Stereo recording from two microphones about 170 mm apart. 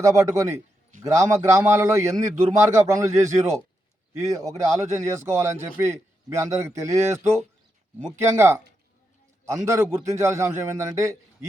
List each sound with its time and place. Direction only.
0.0 s a man's voice: 20° right (ahead or behind)
8.4 s a man's voice: 15° right (ahead or behind)